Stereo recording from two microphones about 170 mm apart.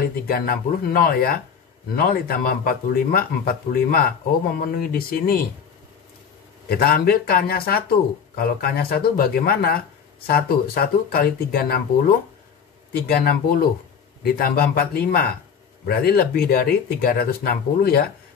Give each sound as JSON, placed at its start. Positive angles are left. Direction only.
{"t": 0.0, "sound": "speech", "side_deg": 60}
{"t": 6.7, "sound": "speech", "side_deg": 60}
{"t": 13.1, "sound": "speech", "side_deg": 65}